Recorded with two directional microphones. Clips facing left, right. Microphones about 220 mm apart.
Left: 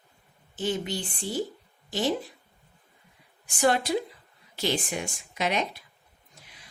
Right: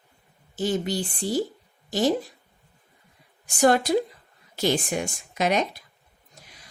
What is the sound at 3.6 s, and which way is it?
Speech, 45° right (ahead or behind).